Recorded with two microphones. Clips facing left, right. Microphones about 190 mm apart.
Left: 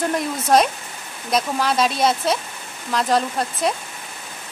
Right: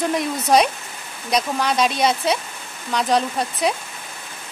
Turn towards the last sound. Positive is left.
turn(degrees=0)  # may be behind; listen again after turning